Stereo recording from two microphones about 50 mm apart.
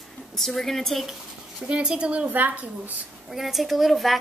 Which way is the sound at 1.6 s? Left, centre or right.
Right.